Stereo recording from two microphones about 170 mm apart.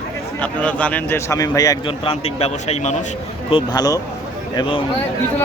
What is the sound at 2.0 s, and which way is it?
Speech, 35° left (ahead or behind).